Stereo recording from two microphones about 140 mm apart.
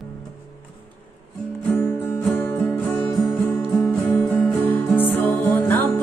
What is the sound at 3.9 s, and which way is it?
Music, 10° left (ahead or behind).